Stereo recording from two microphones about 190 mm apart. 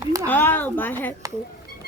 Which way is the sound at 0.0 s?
15° right (ahead or behind).